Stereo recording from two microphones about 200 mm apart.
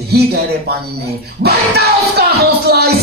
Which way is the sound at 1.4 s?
55° right (ahead or behind).